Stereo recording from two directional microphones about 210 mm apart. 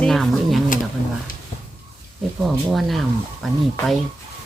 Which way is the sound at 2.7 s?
Centre (ahead or behind).